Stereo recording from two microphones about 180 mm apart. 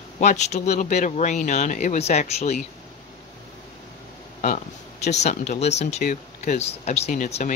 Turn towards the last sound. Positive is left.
turn(degrees=40)  # may be behind; listen again after turning